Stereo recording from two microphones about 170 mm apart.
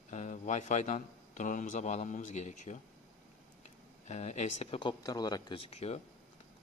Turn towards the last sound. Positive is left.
turn(degrees=40)  # may be behind; listen again after turning